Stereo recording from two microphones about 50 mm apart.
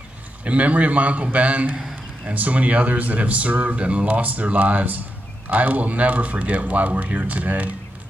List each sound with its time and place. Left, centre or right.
0.4 s speech: right